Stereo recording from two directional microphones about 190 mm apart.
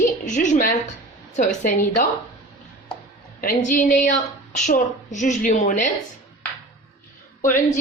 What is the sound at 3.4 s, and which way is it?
A woman's voice, 45° left (ahead or behind).